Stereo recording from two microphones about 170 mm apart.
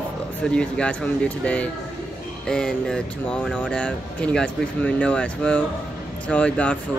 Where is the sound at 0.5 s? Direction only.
5° left (ahead or behind).